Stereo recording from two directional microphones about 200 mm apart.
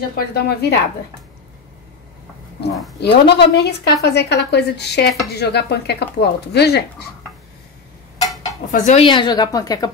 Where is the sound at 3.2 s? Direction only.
55° left (ahead or behind).